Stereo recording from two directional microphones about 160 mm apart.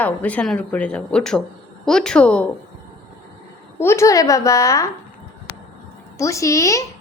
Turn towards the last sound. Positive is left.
turn(degrees=20)  # may be behind; listen again after turning